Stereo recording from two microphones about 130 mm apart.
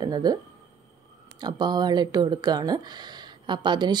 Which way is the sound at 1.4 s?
35° right (ahead or behind).